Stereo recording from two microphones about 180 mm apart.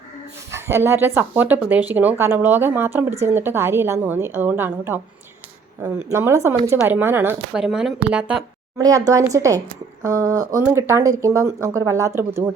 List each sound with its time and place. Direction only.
0.5 s speech: 15° right (ahead or behind)
8.8 s speech: 20° right (ahead or behind)